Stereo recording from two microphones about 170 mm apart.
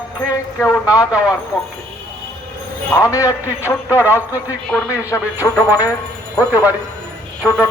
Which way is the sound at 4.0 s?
10° right (ahead or behind).